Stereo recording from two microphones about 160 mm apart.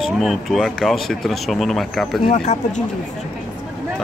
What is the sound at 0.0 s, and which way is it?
Speech, centre (ahead or behind).